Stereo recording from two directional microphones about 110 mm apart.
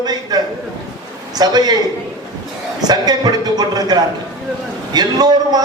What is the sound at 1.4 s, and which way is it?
Speech, 40° right (ahead or behind).